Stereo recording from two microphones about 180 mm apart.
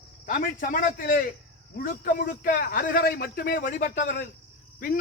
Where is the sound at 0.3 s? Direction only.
50° left (ahead or behind).